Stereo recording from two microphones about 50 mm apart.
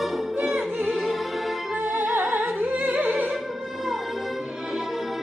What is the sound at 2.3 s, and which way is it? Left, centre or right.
Music, right.